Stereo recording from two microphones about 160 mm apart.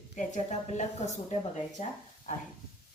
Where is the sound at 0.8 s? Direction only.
45° left (ahead or behind).